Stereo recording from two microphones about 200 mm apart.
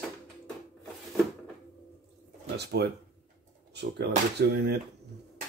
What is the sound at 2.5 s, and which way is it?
Speech, 55° right (ahead or behind).